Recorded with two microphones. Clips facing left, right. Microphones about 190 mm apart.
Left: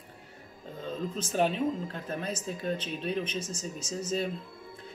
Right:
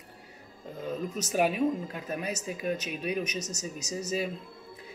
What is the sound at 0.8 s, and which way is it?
Speech, 10° right (ahead or behind).